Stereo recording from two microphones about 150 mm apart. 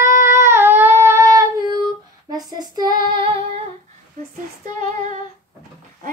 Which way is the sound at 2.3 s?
25° right (ahead or behind).